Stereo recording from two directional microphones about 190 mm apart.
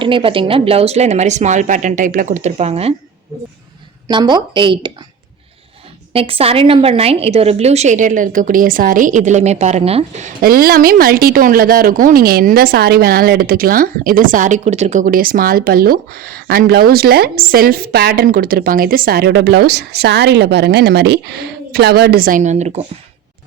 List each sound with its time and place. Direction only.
0.0 s speech: 25° right (ahead or behind)
4.1 s speech: 25° right (ahead or behind)
6.1 s a woman's voice: 30° right (ahead or behind)